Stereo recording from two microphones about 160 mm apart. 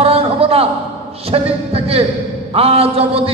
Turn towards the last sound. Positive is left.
turn(degrees=-35)  # may be behind; listen again after turning